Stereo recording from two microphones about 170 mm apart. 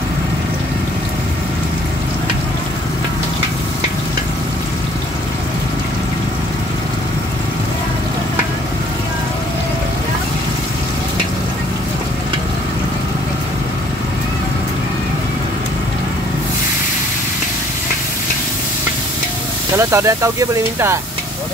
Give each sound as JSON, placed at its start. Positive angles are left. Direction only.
{"t": 19.8, "sound": "speech", "side_deg": -20}